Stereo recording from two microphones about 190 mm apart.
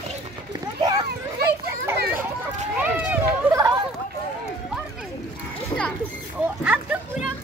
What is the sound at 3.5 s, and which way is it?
Chatter, 20° right (ahead or behind).